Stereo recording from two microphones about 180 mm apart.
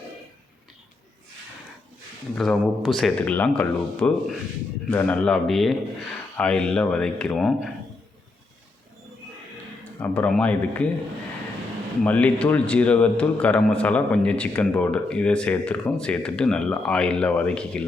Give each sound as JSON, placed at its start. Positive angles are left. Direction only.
{"t": 2.3, "sound": "speech", "side_deg": 0}
{"t": 10.0, "sound": "a man's voice", "side_deg": 5}
{"t": 12.0, "sound": "a man's voice", "side_deg": 5}